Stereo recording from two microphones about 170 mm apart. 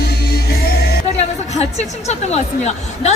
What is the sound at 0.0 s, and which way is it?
Music, 70° left (ahead or behind).